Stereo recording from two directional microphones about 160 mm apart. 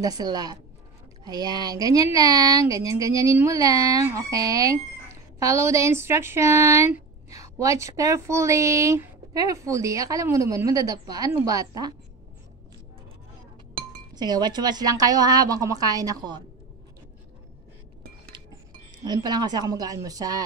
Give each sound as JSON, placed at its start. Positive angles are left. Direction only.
{"t": 0.0, "sound": "speech", "side_deg": -25}
{"t": 14.1, "sound": "speech", "side_deg": -25}
{"t": 19.0, "sound": "speech", "side_deg": -25}